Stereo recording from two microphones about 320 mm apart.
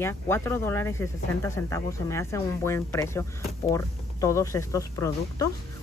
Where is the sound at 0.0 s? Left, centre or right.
Centre.